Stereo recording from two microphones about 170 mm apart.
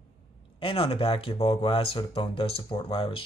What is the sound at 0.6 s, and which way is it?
Speech, 30° left (ahead or behind).